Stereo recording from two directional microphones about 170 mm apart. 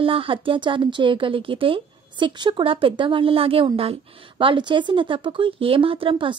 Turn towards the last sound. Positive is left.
turn(degrees=-30)  # may be behind; listen again after turning